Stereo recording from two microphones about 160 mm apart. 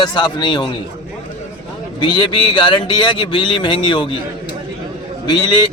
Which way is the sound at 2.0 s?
30° left (ahead or behind).